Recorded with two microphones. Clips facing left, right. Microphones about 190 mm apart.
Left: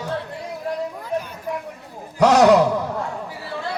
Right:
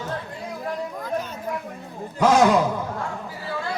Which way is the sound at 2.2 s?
70° left (ahead or behind).